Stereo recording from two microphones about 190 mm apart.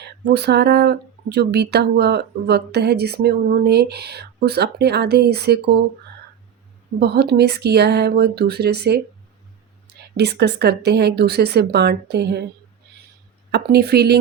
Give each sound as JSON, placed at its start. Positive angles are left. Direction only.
{"t": 0.0, "sound": "speech", "side_deg": -60}
{"t": 7.0, "sound": "speech", "side_deg": -60}
{"t": 10.2, "sound": "speech", "side_deg": -60}
{"t": 13.5, "sound": "speech", "side_deg": -55}